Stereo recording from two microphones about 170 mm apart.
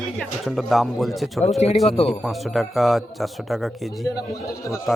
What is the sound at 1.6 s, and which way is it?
Speech, 40° left (ahead or behind).